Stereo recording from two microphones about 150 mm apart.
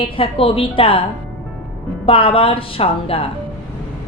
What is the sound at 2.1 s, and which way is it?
A woman's voice, 40° left (ahead or behind).